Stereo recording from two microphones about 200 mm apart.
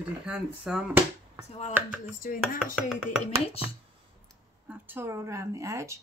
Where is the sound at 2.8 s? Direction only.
Centre (ahead or behind).